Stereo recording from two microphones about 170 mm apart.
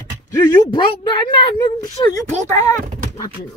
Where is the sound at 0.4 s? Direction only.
25° left (ahead or behind).